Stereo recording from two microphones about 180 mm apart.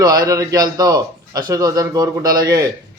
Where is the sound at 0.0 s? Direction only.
20° right (ahead or behind).